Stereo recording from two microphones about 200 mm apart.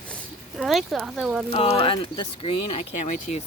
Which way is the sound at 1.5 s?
30° left (ahead or behind).